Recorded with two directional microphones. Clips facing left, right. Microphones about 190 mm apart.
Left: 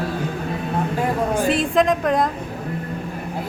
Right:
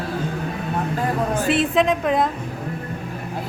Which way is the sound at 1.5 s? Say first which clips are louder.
Even; centre (ahead or behind).